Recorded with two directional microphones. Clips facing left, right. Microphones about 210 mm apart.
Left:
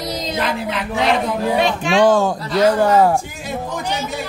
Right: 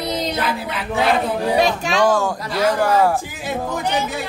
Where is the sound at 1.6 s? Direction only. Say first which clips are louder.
Right 1 dB; 40° right (ahead or behind).